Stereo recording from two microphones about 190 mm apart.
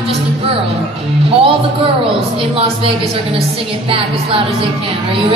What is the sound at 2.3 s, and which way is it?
Speech, 30° right (ahead or behind).